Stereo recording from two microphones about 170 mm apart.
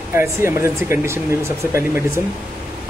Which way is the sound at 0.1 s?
15° right (ahead or behind).